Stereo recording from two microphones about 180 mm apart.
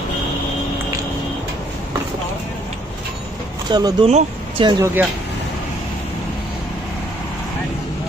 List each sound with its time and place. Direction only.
3.7 s speech: 25° right (ahead or behind)